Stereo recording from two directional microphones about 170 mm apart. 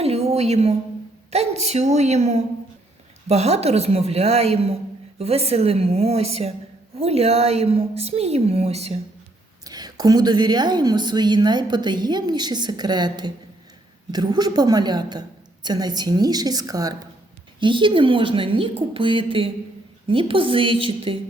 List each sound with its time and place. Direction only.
0.0 s a sound: 40° right (ahead or behind)
1.3 s a woman's voice: 40° right (ahead or behind)
9.6 s a woman's voice: 25° right (ahead or behind)